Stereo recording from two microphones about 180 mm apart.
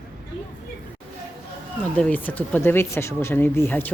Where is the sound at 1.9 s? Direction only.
5° left (ahead or behind).